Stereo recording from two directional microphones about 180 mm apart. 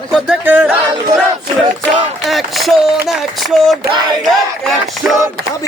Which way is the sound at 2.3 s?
Centre (ahead or behind).